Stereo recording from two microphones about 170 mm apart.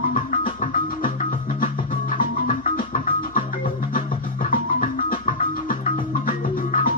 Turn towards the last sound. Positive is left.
turn(degrees=55)  # may be behind; listen again after turning